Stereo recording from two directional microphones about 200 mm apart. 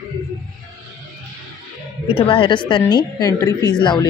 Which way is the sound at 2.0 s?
25° left (ahead or behind).